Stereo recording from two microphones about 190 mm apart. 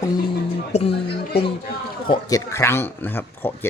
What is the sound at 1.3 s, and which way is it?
Speech, 60° left (ahead or behind).